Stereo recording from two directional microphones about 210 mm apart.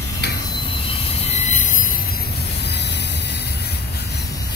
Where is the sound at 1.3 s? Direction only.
35° left (ahead or behind).